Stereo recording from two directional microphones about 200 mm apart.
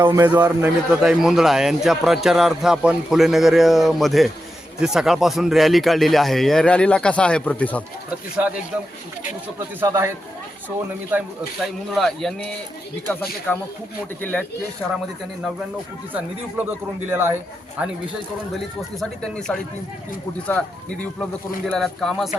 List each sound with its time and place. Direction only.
0.0 s a man's voice: 10° right (ahead or behind); by 7.9 s 5° left (ahead or behind)
9.8 s speech: 15° right (ahead or behind)
11.1 s speech: 10° right (ahead or behind)
11.9 s a man's voice: centre (ahead or behind)
13.5 s speech: 10° left (ahead or behind)
16.1 s a man's voice: 10° right (ahead or behind)